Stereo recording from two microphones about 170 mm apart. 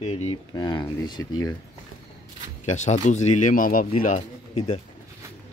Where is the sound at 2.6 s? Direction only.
45° left (ahead or behind).